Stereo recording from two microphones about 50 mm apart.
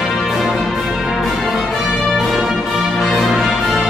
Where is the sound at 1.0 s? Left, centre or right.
Centre.